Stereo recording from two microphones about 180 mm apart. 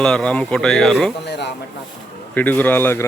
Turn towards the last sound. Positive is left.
turn(degrees=15)  # may be behind; listen again after turning